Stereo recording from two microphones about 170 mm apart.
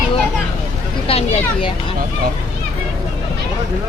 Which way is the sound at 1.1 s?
35° left (ahead or behind).